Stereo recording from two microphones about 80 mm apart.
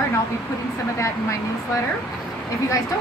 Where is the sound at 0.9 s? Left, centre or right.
Left.